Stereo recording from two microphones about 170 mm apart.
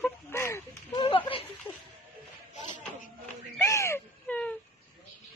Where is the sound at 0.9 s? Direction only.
30° left (ahead or behind).